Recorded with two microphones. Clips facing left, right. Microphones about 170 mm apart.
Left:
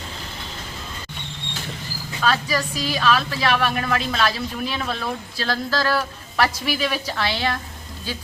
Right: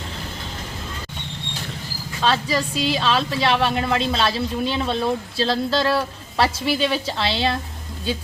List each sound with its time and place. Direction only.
2.2 s speech: 25° right (ahead or behind)